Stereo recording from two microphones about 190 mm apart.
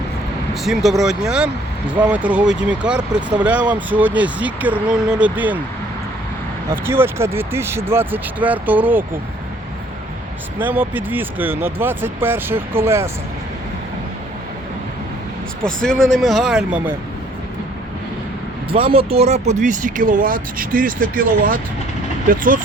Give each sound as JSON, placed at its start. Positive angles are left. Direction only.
{"t": 0.5, "sound": "speech", "side_deg": 0}
{"t": 6.7, "sound": "speech", "side_deg": -10}
{"t": 10.6, "sound": "speech", "side_deg": -10}
{"t": 15.6, "sound": "speech", "side_deg": 5}
{"t": 18.7, "sound": "speech", "side_deg": -30}